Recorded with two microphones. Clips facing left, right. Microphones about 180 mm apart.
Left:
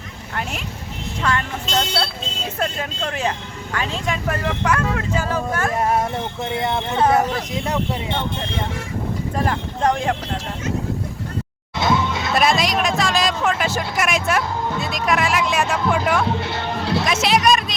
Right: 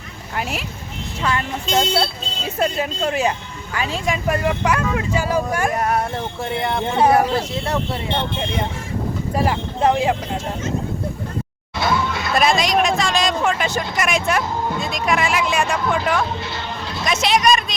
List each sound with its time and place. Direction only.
1.2 s speech: 10° right (ahead or behind)
6.4 s speech: 20° left (ahead or behind)
7.0 s speech: 10° right (ahead or behind)
7.5 s speech: 15° left (ahead or behind)
9.3 s speech: 10° right (ahead or behind)
11.8 s a sound: 20° left (ahead or behind)
12.3 s speech: centre (ahead or behind)
16.2 s speech: 60° left (ahead or behind)
17.1 s speech: 5° left (ahead or behind)